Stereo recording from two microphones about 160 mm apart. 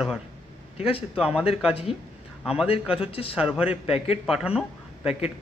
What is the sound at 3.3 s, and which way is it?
Speech, 5° right (ahead or behind).